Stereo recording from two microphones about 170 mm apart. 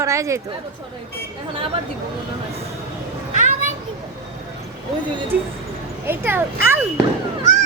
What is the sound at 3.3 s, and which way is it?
Children playing, 45° right (ahead or behind).